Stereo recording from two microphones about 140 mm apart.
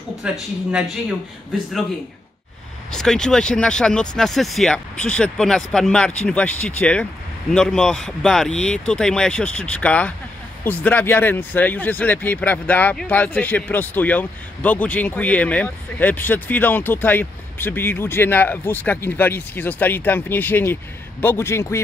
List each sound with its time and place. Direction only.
0.2 s speech: 5° right (ahead or behind)
2.9 s a man's voice: 5° left (ahead or behind); by 21.8 s 20° left (ahead or behind)